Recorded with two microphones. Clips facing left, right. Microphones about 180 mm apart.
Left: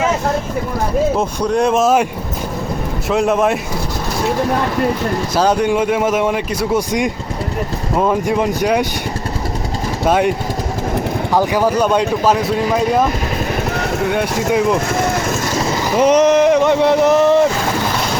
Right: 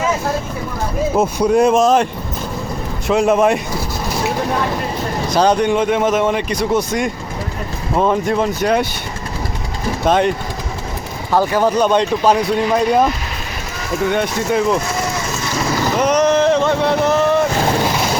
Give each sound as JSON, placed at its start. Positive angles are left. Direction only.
{"t": 1.2, "sound": "speech", "side_deg": -5}
{"t": 3.1, "sound": "speech", "side_deg": 0}
{"t": 5.3, "sound": "speech", "side_deg": 5}
{"t": 10.1, "sound": "speech", "side_deg": 10}
{"t": 11.3, "sound": "speech", "side_deg": 10}
{"t": 14.1, "sound": "speech", "side_deg": 10}
{"t": 14.8, "sound": "a sound", "side_deg": 55}
{"t": 16.0, "sound": "a sound", "side_deg": 30}
{"t": 16.3, "sound": "speech", "side_deg": 15}